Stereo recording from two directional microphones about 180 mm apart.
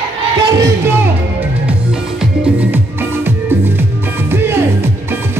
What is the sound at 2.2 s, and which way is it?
Music, 5° right (ahead or behind).